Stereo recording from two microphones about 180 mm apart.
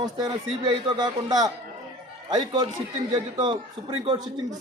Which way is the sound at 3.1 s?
25° right (ahead or behind).